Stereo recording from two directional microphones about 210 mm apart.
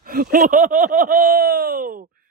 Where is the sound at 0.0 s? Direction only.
45° right (ahead or behind).